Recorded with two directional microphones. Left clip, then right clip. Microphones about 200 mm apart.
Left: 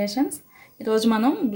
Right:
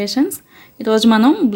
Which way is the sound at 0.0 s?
50° right (ahead or behind).